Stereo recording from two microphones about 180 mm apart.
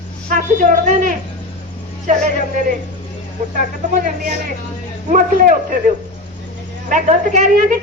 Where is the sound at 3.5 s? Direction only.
45° right (ahead or behind).